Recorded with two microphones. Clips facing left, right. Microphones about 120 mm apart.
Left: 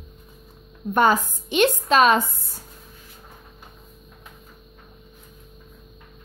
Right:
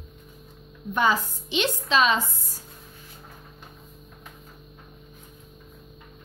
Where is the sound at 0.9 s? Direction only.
50° left (ahead or behind).